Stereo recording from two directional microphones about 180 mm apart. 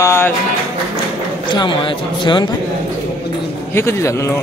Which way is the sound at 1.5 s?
25° left (ahead or behind).